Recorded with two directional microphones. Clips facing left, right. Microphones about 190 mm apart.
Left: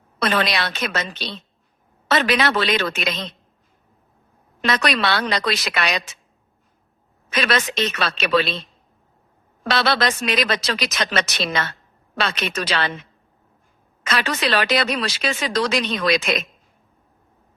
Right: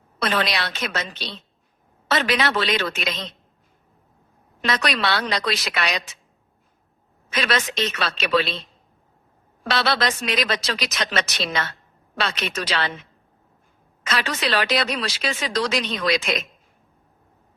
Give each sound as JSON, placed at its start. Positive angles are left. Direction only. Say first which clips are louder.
{"t": 0.2, "sound": "speech", "louder": "left 2 dB", "side_deg": 60}
{"t": 2.0, "sound": "speech", "louder": "left 3 dB", "side_deg": 60}
{"t": 4.6, "sound": "speech", "louder": "left 3 dB", "side_deg": 55}
{"t": 7.3, "sound": "speech", "louder": "left 2 dB", "side_deg": 60}
{"t": 9.6, "sound": "speech", "louder": "left 2 dB", "side_deg": 55}
{"t": 14.1, "sound": "speech", "louder": "left 2 dB", "side_deg": 60}